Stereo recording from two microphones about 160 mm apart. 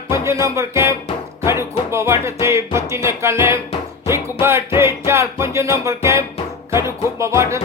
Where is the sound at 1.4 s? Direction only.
15° right (ahead or behind).